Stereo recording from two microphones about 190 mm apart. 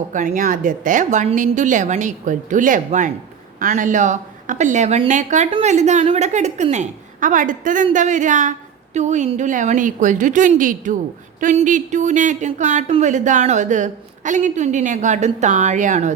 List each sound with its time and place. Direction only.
0.1 s speech: 45° right (ahead or behind)
5.5 s a woman's voice: 25° right (ahead or behind)
5.7 s speech: 40° right (ahead or behind)